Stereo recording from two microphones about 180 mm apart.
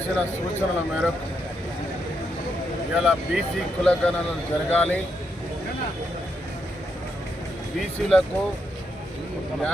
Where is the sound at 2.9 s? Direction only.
Centre (ahead or behind).